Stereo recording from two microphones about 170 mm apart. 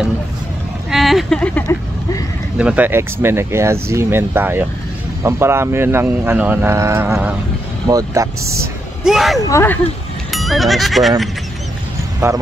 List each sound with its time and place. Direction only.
0.8 s speech: centre (ahead or behind)
2.5 s speech: 5° right (ahead or behind)
9.0 s speech: centre (ahead or behind)
9.5 s speech: 15° left (ahead or behind)
10.3 s speech: centre (ahead or behind)